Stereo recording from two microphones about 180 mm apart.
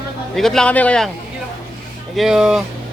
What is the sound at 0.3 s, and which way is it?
Speech, centre (ahead or behind).